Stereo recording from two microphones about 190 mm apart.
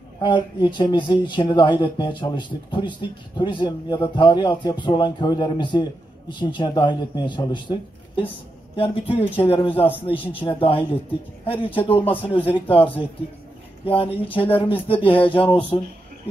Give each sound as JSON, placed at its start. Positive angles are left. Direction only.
{"t": 0.2, "sound": "speech", "side_deg": 25}
{"t": 12.0, "sound": "speech", "side_deg": 10}
{"t": 12.5, "sound": "speech", "side_deg": 30}
{"t": 13.8, "sound": "speech", "side_deg": 30}